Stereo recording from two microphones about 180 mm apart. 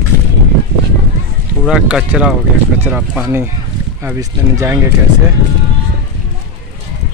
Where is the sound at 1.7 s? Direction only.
5° right (ahead or behind).